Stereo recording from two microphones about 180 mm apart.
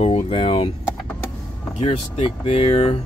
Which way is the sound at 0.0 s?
35° left (ahead or behind).